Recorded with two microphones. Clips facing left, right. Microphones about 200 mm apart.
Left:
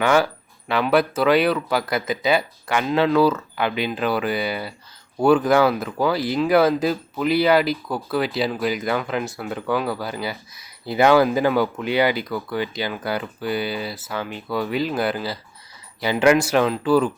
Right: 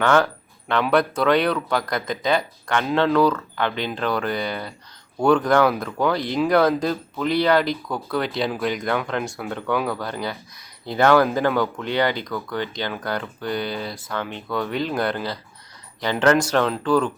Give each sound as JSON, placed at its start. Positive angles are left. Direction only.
{"t": 0.0, "sound": "speech", "side_deg": 10}